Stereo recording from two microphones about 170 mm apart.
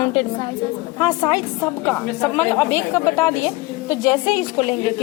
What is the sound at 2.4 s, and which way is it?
A woman's voice, 10° left (ahead or behind).